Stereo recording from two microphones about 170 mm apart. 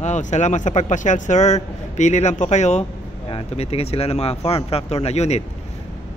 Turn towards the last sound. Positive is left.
turn(degrees=40)  # may be behind; listen again after turning